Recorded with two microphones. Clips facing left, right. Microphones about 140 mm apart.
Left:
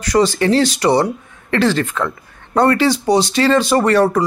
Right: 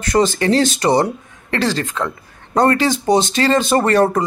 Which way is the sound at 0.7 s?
25° right (ahead or behind).